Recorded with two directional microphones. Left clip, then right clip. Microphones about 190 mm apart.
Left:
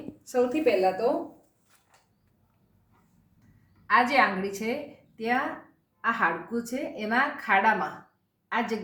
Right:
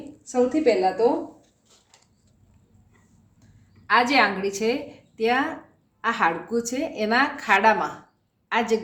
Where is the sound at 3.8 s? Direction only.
35° right (ahead or behind).